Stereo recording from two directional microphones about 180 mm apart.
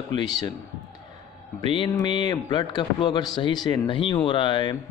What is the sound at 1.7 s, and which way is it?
A man's voice, 25° left (ahead or behind).